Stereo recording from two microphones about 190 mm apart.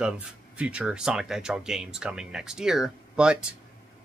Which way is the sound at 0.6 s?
5° right (ahead or behind).